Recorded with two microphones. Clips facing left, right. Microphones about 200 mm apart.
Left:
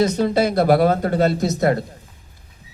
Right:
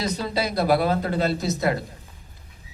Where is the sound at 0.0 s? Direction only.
50° left (ahead or behind).